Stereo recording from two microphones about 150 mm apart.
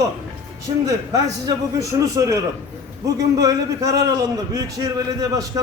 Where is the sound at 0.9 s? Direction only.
25° right (ahead or behind).